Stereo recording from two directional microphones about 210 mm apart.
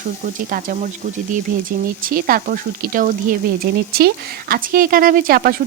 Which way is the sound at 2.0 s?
45° right (ahead or behind).